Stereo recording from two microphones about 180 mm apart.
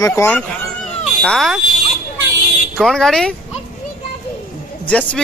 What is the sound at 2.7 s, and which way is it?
Speech, centre (ahead or behind).